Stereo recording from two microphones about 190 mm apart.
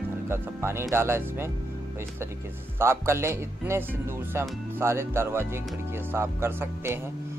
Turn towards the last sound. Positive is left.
turn(degrees=-10)  # may be behind; listen again after turning